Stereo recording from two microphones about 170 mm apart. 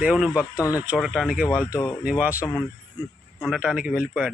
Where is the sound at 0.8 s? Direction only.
5° right (ahead or behind).